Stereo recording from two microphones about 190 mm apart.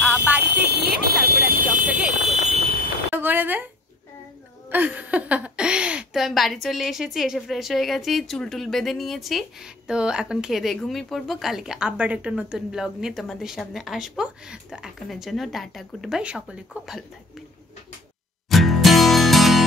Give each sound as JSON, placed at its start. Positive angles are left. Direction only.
{"t": 0.2, "sound": "a sound", "side_deg": -10}
{"t": 1.0, "sound": "vehicle", "side_deg": -50}
{"t": 1.9, "sound": "fire alarm", "side_deg": -5}
{"t": 2.2, "sound": "fire alarm", "side_deg": -35}
{"t": 3.2, "sound": "a sound", "side_deg": -10}
{"t": 4.6, "sound": "a woman's voice", "side_deg": -10}
{"t": 18.5, "sound": "music", "side_deg": 0}